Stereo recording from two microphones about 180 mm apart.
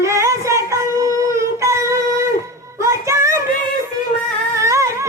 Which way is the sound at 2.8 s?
15° right (ahead or behind).